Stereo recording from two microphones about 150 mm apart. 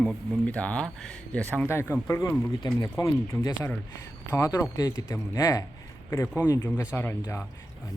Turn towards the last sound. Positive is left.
turn(degrees=10)  # may be behind; listen again after turning